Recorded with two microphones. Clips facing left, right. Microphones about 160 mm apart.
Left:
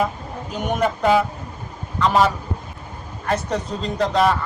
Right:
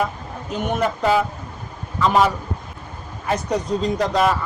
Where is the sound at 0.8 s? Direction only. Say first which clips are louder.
Left 2 dB; centre (ahead or behind).